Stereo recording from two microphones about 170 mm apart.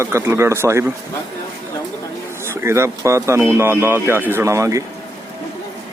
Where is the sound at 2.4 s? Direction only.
15° right (ahead or behind).